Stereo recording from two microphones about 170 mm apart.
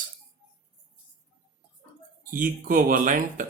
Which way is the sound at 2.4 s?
55° right (ahead or behind).